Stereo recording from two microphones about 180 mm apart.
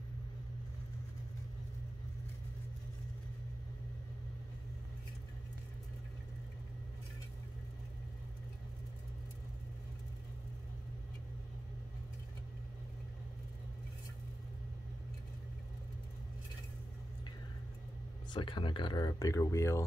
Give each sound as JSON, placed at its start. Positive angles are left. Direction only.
{"t": 18.3, "sound": "speech", "side_deg": 25}